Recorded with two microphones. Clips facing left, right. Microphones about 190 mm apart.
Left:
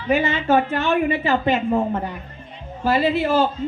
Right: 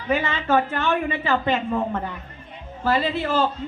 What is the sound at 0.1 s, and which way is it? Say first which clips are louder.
Speech: left 3 dB; 25° left (ahead or behind).